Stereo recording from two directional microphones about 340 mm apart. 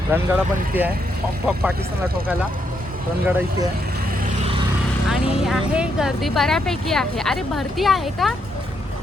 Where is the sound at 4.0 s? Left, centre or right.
Right.